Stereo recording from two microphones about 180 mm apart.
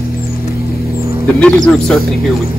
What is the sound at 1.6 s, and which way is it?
Speech, 5° left (ahead or behind).